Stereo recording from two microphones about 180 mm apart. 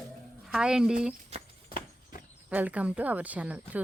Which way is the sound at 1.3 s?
35° right (ahead or behind).